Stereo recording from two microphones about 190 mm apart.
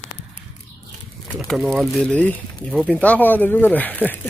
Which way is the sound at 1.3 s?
Centre (ahead or behind).